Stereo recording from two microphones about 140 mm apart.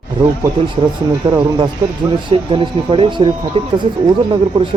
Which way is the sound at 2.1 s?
40° right (ahead or behind).